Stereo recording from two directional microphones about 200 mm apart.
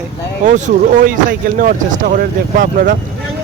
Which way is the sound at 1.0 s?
45° right (ahead or behind).